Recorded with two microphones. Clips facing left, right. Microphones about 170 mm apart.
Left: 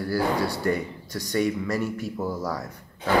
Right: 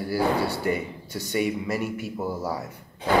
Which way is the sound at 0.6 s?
5° right (ahead or behind).